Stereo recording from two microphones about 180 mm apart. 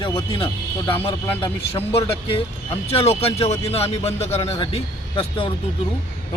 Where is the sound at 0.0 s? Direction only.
30° left (ahead or behind).